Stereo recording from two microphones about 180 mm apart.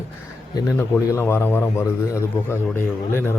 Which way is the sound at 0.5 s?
15° left (ahead or behind).